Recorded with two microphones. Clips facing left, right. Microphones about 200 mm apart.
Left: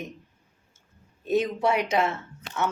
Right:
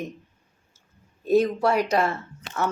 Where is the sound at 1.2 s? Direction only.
Centre (ahead or behind).